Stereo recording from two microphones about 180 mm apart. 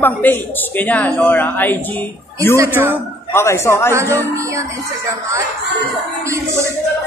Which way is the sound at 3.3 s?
15° left (ahead or behind).